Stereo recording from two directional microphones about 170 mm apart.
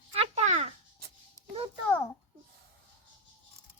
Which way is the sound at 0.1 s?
35° right (ahead or behind).